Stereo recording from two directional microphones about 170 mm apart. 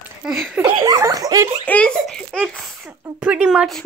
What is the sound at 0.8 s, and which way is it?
Speech, 20° right (ahead or behind).